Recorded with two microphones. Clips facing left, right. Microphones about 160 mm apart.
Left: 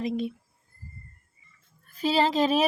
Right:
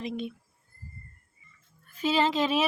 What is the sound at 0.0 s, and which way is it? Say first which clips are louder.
Speech: left 5 dB; 35° left (ahead or behind).